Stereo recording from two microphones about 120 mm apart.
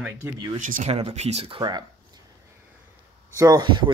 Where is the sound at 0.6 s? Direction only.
80° right.